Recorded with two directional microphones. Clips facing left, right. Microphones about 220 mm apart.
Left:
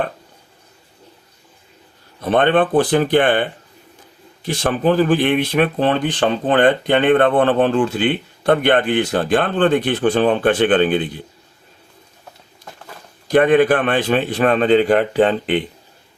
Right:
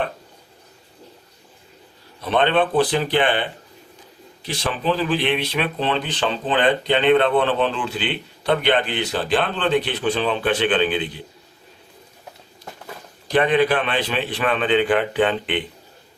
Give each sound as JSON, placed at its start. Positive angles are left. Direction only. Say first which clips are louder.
{"t": 2.2, "sound": "speech", "louder": "left 4 dB", "side_deg": 50}
{"t": 13.2, "sound": "speech", "louder": "left 5 dB", "side_deg": 50}